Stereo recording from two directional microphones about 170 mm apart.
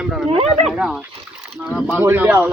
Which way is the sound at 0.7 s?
Centre (ahead or behind).